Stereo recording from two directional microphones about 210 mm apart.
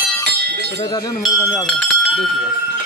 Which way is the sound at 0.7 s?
20° left (ahead or behind).